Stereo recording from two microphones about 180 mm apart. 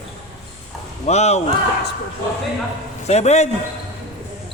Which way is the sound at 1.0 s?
35° left (ahead or behind).